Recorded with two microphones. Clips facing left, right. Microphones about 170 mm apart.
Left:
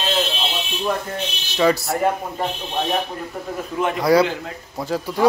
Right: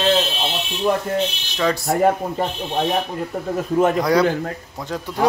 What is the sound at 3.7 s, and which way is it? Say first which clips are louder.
Speech: right 6 dB; 40° right (ahead or behind).